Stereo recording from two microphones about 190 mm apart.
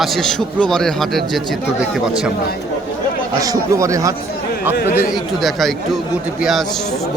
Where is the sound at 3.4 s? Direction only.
15° right (ahead or behind).